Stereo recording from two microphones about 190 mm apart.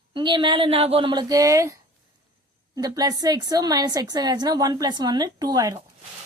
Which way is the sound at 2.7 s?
20° right (ahead or behind).